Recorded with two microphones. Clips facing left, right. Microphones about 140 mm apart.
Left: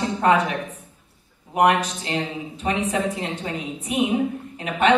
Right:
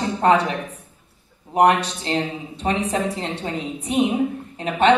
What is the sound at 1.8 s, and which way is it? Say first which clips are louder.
A woman's voice: right 3 dB; 35° right (ahead or behind).